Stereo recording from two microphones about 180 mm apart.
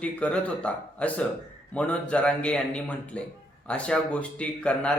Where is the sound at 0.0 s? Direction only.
5° left (ahead or behind).